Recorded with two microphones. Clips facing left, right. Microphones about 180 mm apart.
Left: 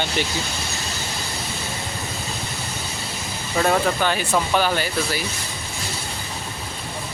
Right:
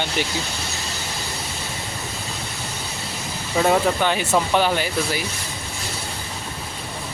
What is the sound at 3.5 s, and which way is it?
Speech, 15° right (ahead or behind).